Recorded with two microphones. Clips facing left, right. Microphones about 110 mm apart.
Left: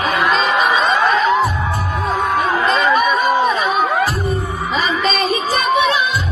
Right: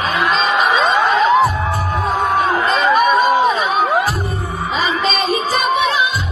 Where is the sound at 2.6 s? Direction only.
Centre (ahead or behind).